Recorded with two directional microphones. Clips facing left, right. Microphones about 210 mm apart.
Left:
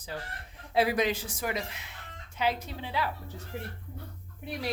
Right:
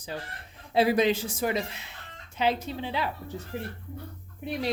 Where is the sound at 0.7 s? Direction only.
25° right (ahead or behind).